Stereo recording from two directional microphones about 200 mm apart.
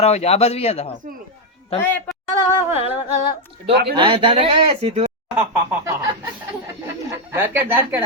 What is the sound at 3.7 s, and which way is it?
Speech, 55° right (ahead or behind).